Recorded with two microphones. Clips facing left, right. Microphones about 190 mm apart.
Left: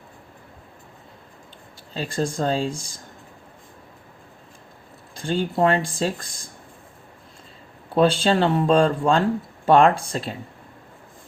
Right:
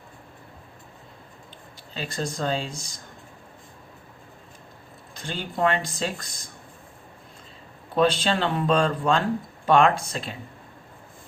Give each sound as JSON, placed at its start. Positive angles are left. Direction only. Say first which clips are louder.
{"t": 1.9, "sound": "speech", "louder": "left 5 dB", "side_deg": 35}
{"t": 5.3, "sound": "speech", "louder": "left 5 dB", "side_deg": 35}
{"t": 7.9, "sound": "speech", "louder": "left 4 dB", "side_deg": 30}